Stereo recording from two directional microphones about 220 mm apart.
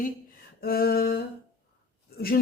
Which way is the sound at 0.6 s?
45° left (ahead or behind).